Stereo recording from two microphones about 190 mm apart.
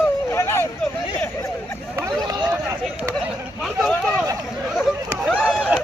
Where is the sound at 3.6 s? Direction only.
5° left (ahead or behind).